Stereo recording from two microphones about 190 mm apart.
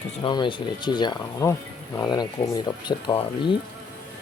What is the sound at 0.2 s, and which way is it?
Speech, 25° left (ahead or behind).